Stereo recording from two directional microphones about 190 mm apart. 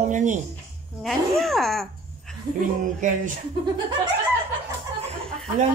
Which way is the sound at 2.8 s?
40° right (ahead or behind).